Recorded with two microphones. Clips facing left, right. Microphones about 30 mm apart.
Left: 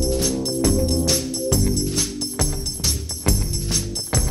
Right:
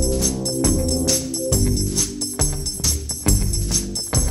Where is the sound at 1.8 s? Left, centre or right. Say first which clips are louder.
Even; left.